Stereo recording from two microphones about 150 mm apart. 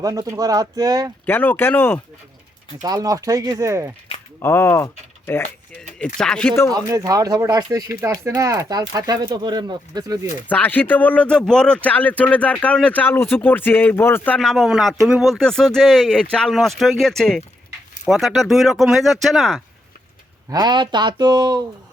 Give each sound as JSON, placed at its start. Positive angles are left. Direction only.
{"t": 0.0, "sound": "speech", "side_deg": -25}
{"t": 1.2, "sound": "speech", "side_deg": 10}
{"t": 2.8, "sound": "speech", "side_deg": -25}
{"t": 4.4, "sound": "speech", "side_deg": 15}
{"t": 6.7, "sound": "speech", "side_deg": -25}
{"t": 10.5, "sound": "speech", "side_deg": 10}
{"t": 14.3, "sound": "speech", "side_deg": 0}
{"t": 20.5, "sound": "speech", "side_deg": -30}